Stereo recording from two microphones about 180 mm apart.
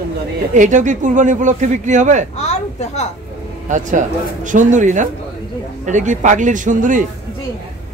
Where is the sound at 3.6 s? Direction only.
45° right (ahead or behind).